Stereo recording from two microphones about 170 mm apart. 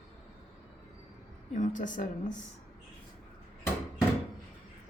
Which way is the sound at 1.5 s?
50° left (ahead or behind).